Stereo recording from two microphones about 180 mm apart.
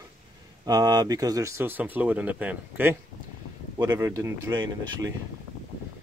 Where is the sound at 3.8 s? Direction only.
20° right (ahead or behind).